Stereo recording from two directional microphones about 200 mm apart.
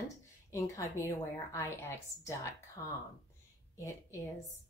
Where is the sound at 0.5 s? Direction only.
15° left (ahead or behind).